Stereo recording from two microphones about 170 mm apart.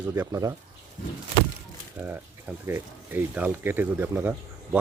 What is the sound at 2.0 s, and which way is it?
Speech, 10° right (ahead or behind).